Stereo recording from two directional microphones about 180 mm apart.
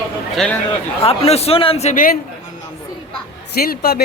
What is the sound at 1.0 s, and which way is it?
A man's voice, 35° left (ahead or behind).